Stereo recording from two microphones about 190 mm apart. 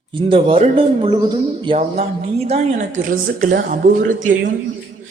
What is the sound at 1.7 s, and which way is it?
Speech, 35° right (ahead or behind).